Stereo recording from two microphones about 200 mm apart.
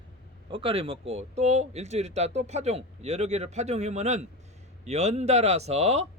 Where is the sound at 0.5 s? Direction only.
25° right (ahead or behind).